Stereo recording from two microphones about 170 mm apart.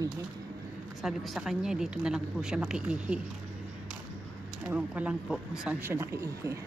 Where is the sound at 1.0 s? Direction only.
Centre (ahead or behind).